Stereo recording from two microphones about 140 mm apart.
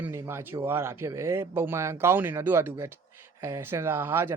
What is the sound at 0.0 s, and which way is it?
Speech, 20° right (ahead or behind).